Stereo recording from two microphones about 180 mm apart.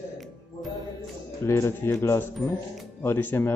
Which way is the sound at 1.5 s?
15° left (ahead or behind).